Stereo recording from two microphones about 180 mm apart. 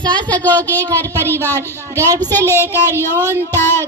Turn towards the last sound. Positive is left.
turn(degrees=15)  # may be behind; listen again after turning